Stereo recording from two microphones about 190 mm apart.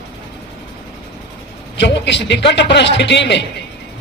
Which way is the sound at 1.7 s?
65° left (ahead or behind).